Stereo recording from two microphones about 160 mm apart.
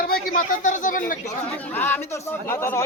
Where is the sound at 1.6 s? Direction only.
10° left (ahead or behind).